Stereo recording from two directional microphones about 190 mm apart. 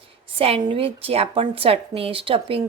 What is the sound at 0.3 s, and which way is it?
A woman's voice, 30° right (ahead or behind).